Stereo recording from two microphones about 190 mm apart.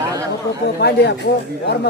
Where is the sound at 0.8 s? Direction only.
60° left (ahead or behind).